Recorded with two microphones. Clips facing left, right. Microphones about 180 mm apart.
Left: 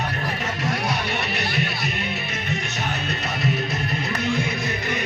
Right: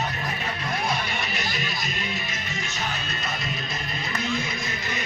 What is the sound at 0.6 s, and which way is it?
Music, 70° left (ahead or behind).